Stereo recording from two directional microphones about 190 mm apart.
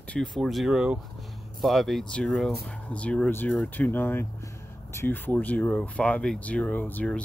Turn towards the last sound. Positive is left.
turn(degrees=5)  # may be behind; listen again after turning